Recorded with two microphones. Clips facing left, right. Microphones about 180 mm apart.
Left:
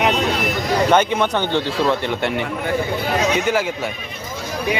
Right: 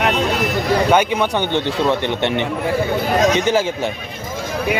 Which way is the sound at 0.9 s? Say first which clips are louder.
Right 1 dB; 10° right (ahead or behind).